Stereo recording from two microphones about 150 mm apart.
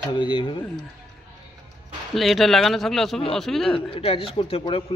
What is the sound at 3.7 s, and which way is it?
Speech, 40° left (ahead or behind).